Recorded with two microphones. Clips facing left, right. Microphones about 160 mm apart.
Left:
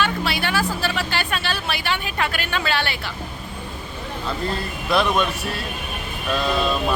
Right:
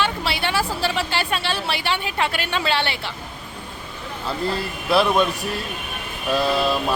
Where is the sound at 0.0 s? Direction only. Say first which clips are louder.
Even; 25° right (ahead or behind).